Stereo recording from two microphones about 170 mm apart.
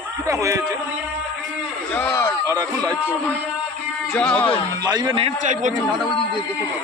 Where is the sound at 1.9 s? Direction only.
10° left (ahead or behind).